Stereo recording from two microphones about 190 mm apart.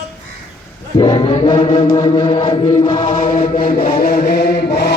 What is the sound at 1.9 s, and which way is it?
Chant, 30° left (ahead or behind).